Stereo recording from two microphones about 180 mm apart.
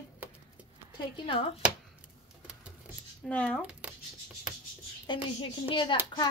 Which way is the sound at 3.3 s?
5° left (ahead or behind).